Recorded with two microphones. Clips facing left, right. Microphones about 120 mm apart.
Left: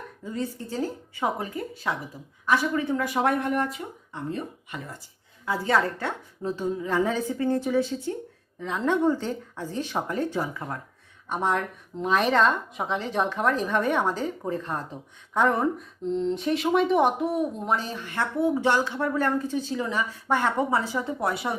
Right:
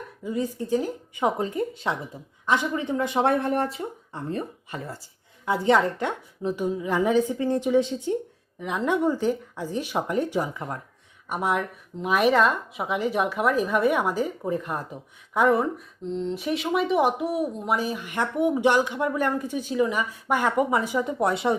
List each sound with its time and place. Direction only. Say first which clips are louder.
0.3 s speech: right 6 dB; 15° right (ahead or behind)
11.3 s speech: even; 10° right (ahead or behind)